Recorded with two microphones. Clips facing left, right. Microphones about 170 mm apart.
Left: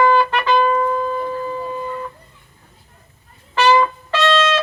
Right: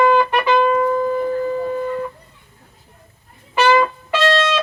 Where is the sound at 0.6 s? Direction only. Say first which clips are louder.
Right 2 dB; 15° right (ahead or behind).